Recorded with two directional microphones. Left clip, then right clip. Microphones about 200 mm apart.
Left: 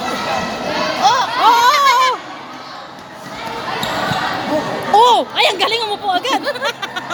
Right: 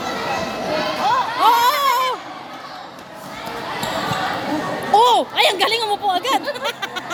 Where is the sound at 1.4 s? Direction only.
5° right (ahead or behind).